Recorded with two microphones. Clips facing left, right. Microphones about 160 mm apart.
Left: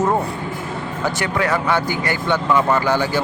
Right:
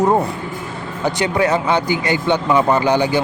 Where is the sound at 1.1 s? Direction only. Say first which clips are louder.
Right 5 dB; 20° right (ahead or behind).